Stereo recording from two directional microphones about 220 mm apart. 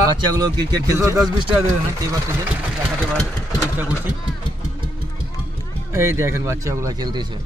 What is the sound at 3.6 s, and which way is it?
Speech, 10° right (ahead or behind).